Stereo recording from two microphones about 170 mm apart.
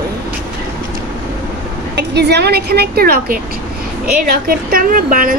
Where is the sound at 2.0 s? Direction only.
85° right; by 5.3 s 55° right (ahead or behind).